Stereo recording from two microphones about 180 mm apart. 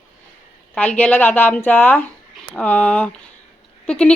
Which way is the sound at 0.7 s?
10° left (ahead or behind).